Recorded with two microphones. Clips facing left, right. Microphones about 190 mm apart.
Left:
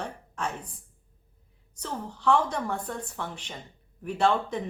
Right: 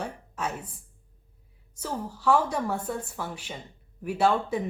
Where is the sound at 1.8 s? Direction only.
10° right (ahead or behind).